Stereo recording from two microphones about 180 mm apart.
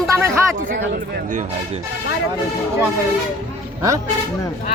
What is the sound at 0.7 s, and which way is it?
Speech, 45° right (ahead or behind).